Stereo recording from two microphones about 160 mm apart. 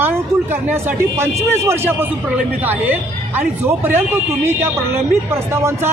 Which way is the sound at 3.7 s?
15° right (ahead or behind).